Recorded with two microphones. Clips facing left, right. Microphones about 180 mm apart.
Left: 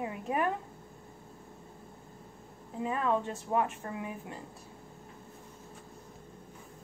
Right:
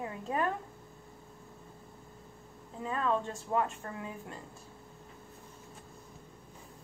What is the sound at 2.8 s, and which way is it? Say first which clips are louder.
A woman's voice: left 2 dB; 15° left (ahead or behind).